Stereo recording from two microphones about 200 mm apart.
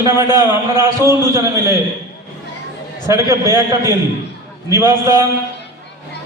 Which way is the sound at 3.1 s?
15° right (ahead or behind).